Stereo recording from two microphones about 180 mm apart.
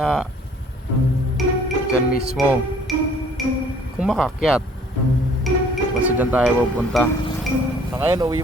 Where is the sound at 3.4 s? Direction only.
Centre (ahead or behind).